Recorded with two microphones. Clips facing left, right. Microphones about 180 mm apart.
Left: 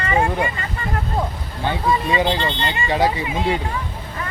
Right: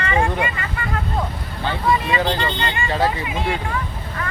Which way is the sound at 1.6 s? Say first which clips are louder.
Even; 15° left (ahead or behind).